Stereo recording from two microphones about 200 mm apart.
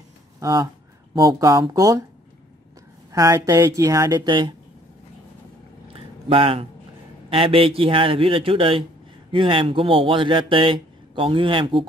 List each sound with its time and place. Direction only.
0.4 s speech: 15° right (ahead or behind)
3.1 s speech: 15° right (ahead or behind)
5.9 s a sound: 25° right (ahead or behind)
7.2 s speech: 25° right (ahead or behind)